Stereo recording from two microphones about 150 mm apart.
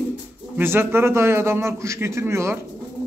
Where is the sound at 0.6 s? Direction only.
15° right (ahead or behind).